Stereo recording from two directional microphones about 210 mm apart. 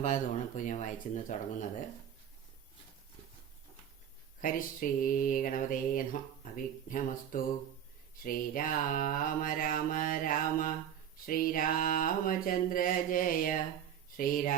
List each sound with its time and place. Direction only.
0.0 s mantra: 35° left (ahead or behind)
4.4 s mantra: 40° left (ahead or behind)
14.2 s speech: 40° left (ahead or behind)